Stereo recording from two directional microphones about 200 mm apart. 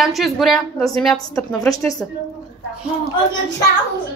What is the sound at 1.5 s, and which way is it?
Speech, 20° left (ahead or behind).